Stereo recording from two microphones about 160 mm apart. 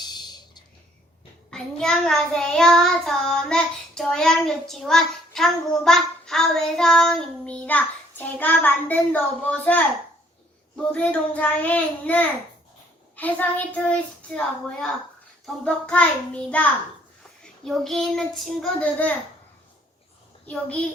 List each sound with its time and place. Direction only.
0.0 s a sound: 25° left (ahead or behind)
1.5 s child singing: 5° left (ahead or behind)
10.9 s a child's voice: 10° left (ahead or behind)
17.6 s child singing: centre (ahead or behind)